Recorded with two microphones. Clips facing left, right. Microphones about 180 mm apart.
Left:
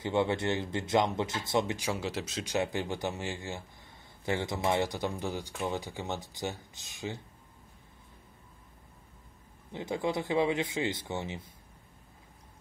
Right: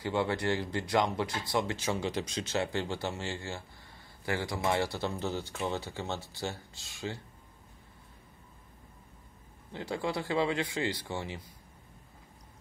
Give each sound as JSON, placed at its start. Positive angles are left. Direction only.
{"t": 0.0, "sound": "speech", "side_deg": 25}
{"t": 1.8, "sound": "speech", "side_deg": 5}
{"t": 2.5, "sound": "speech", "side_deg": 15}
{"t": 9.7, "sound": "speech", "side_deg": 20}